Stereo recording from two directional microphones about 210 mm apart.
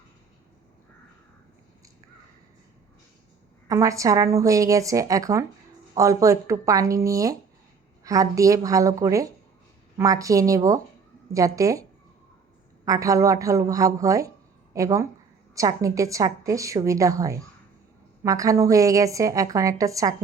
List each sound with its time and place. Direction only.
3.7 s a woman's voice: 15° right (ahead or behind)